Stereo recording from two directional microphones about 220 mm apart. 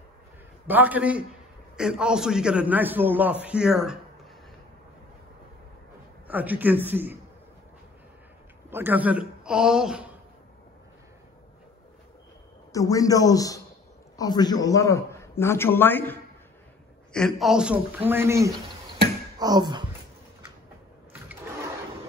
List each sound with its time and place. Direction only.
0.7 s a man's voice: 10° right (ahead or behind)
6.2 s a man's voice: 5° right (ahead or behind)
8.6 s speech: 10° right (ahead or behind)
12.7 s a man's voice: 15° left (ahead or behind); by 19.8 s 20° right (ahead or behind)
21.1 s toilet flush: 5° right (ahead or behind)